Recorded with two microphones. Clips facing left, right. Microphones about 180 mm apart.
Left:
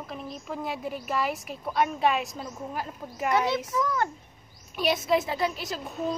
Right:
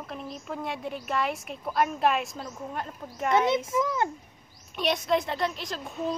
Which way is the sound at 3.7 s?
20° right (ahead or behind).